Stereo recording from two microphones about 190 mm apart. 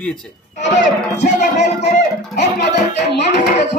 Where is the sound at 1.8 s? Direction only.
60° left (ahead or behind).